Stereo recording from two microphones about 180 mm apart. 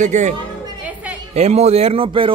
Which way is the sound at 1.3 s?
35° right (ahead or behind).